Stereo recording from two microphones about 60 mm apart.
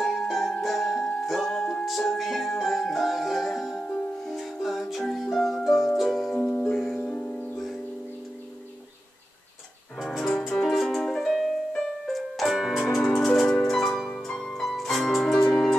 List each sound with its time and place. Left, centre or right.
0.0 s music: centre
3.8 s music: centre
4.4 s music: centre
6.4 s music: centre
7.5 s music: centre
9.9 s music: centre
12.8 s music: centre